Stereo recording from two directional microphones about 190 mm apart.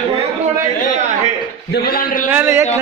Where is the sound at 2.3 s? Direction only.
15° right (ahead or behind).